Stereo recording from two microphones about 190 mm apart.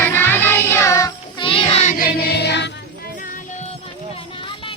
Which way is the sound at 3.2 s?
45° left (ahead or behind).